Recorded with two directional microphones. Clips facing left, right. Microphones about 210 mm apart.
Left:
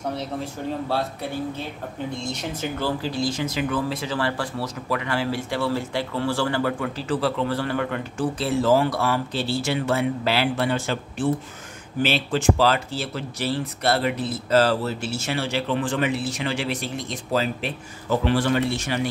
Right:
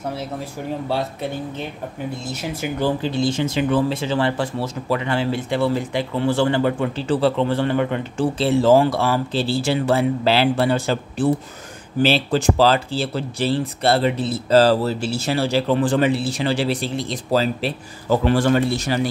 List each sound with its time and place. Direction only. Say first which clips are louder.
2.2 s speech: right 2 dB; 10° right (ahead or behind)
3.0 s speech: right 5 dB; 25° right (ahead or behind); by 18.9 s 40° right (ahead or behind)